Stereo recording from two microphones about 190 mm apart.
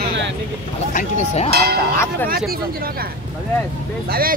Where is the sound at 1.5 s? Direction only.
60° right (ahead or behind).